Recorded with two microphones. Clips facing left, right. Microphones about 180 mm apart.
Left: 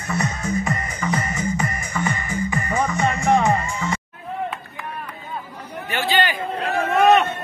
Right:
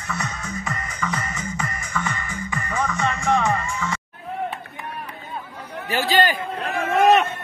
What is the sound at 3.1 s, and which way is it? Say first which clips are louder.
Music: left 3 dB; 35° left (ahead or behind).